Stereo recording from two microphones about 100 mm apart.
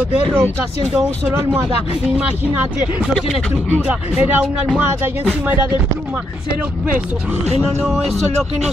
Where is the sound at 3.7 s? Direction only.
15° right (ahead or behind).